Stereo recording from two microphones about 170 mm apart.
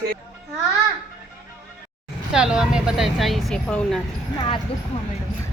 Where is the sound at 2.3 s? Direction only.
5° right (ahead or behind).